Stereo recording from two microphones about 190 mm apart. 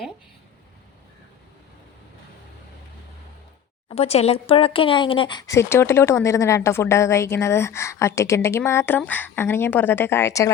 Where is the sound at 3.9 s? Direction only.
35° left (ahead or behind).